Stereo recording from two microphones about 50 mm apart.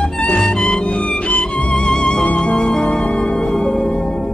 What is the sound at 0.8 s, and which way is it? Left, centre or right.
Music, left.